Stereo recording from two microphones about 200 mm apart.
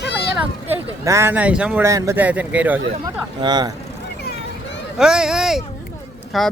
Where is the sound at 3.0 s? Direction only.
20° right (ahead or behind).